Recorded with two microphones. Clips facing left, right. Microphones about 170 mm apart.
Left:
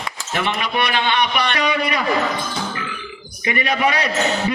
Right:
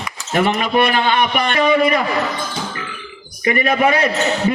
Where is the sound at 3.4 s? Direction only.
45° right (ahead or behind).